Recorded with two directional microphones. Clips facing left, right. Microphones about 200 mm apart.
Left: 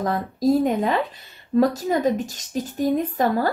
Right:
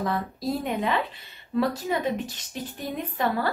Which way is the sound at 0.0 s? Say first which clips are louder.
Left 6 dB; 45° left (ahead or behind).